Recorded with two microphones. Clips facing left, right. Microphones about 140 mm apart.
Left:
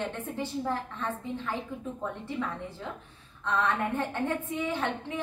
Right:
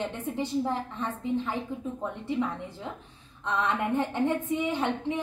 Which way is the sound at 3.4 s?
15° right (ahead or behind).